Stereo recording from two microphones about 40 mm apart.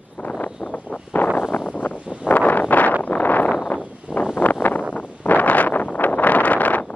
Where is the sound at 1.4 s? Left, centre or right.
Left.